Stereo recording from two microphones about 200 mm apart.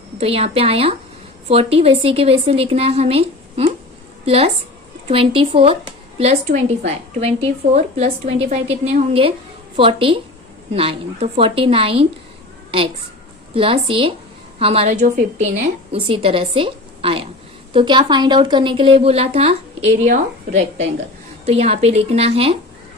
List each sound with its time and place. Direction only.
0.2 s a woman's voice: 30° right (ahead or behind)
13.5 s a woman's voice: 25° right (ahead or behind)